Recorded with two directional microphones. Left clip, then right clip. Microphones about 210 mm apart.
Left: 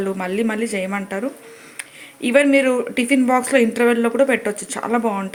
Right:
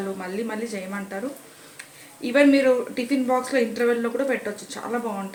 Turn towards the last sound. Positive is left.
turn(degrees=40)  # may be behind; listen again after turning